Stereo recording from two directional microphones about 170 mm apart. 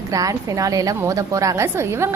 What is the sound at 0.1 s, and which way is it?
A woman's voice, 20° right (ahead or behind).